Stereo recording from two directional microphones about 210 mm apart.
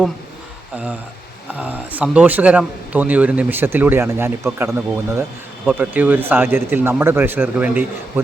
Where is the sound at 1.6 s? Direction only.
5° right (ahead or behind).